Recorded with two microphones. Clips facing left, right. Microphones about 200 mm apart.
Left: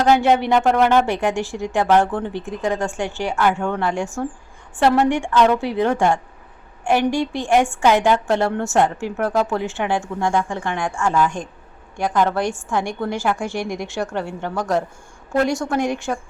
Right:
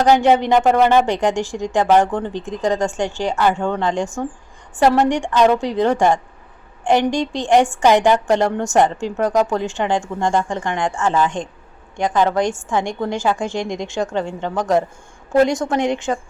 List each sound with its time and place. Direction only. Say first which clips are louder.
0.1 s a woman's voice: right 2 dB; 15° right (ahead or behind)